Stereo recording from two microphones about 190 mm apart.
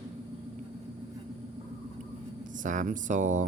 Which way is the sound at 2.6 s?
40° right (ahead or behind).